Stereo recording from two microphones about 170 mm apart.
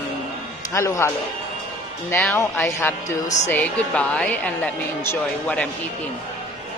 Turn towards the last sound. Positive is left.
turn(degrees=10)  # may be behind; listen again after turning